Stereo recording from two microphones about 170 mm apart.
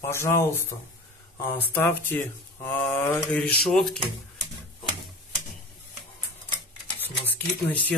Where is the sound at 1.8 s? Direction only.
15° left (ahead or behind).